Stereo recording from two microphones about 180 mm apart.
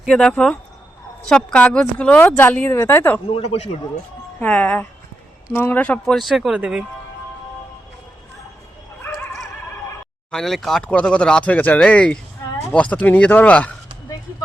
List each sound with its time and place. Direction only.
0.0 s speech: centre (ahead or behind)
3.2 s speech: 35° left (ahead or behind)
4.4 s speech: 10° left (ahead or behind)
9.0 s dog: centre (ahead or behind)
10.3 s speech: centre (ahead or behind)